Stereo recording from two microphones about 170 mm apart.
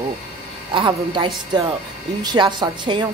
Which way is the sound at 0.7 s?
30° right (ahead or behind).